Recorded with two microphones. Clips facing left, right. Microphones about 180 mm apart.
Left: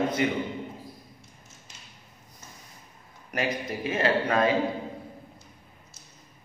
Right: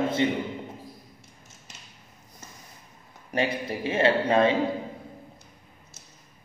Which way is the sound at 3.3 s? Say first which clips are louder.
Right 2 dB; 30° right (ahead or behind).